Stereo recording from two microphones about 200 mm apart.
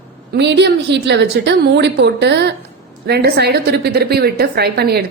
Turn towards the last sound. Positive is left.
turn(degrees=-55)  # may be behind; listen again after turning